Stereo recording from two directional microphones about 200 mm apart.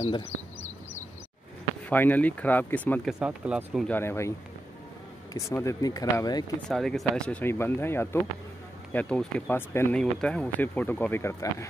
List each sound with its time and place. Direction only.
1.9 s speech: 10° left (ahead or behind)
3.1 s speech: 5° right (ahead or behind); by 4.3 s 10° left (ahead or behind)
5.3 s speech: 15° left (ahead or behind)
6.7 s speech: centre (ahead or behind)